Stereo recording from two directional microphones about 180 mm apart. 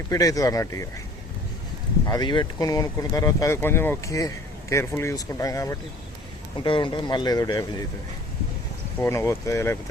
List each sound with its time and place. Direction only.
0.1 s speech: 20° left (ahead or behind)
2.0 s speech: 25° left (ahead or behind)
9.0 s speech: 15° left (ahead or behind)